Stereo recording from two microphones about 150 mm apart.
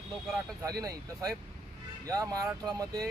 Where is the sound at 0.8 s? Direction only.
25° right (ahead or behind).